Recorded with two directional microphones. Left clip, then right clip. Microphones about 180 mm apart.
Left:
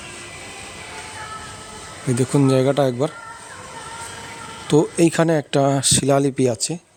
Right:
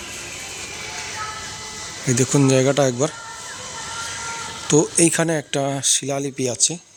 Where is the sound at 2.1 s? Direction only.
10° left (ahead or behind).